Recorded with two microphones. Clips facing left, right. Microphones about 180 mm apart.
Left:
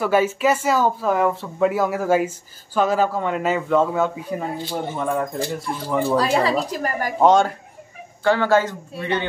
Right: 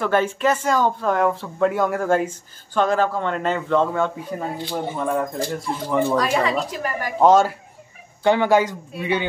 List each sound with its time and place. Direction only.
0.0 s speech: 5° left (ahead or behind)
6.7 s speech: 40° left (ahead or behind)
7.2 s speech: centre (ahead or behind)
8.2 s a man's voice: 15° right (ahead or behind)